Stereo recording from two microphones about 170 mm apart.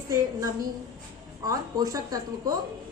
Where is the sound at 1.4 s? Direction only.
20° right (ahead or behind).